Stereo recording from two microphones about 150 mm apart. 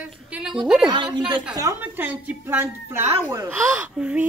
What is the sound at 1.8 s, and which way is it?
Speech, 10° right (ahead or behind).